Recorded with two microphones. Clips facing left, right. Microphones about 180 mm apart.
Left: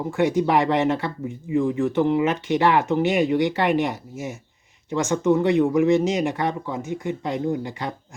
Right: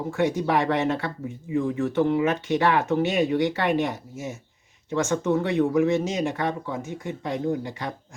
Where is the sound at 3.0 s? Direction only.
15° left (ahead or behind).